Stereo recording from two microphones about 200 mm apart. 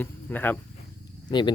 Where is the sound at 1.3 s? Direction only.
25° left (ahead or behind).